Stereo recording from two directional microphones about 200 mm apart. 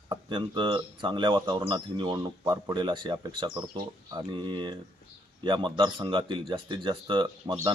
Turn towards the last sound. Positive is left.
turn(degrees=-20)  # may be behind; listen again after turning